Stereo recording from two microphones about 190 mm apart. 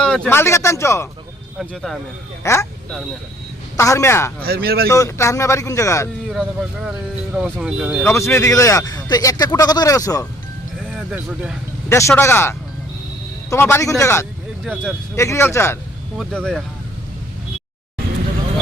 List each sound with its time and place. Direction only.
0.0 s speech: 5° left (ahead or behind)
1.5 s speech: centre (ahead or behind)
2.4 s speech: 15° left (ahead or behind)
3.8 s speech: 15° left (ahead or behind)
4.4 s speech: 55° right (ahead or behind)
4.9 s speech: 15° left (ahead or behind)
6.3 s speech: 5° right (ahead or behind)
8.0 s speech: 15° left (ahead or behind)
10.9 s speech: 5° right (ahead or behind)
11.9 s speech: 15° left (ahead or behind)
14.6 s speech: centre (ahead or behind)
15.1 s speech: 15° left (ahead or behind)